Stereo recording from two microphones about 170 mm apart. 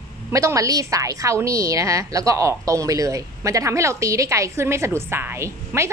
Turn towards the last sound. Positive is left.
turn(degrees=-15)  # may be behind; listen again after turning